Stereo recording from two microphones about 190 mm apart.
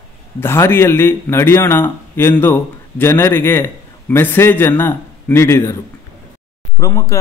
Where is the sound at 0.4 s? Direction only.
10° left (ahead or behind).